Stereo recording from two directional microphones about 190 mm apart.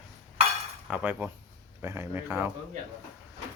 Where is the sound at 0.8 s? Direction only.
10° right (ahead or behind).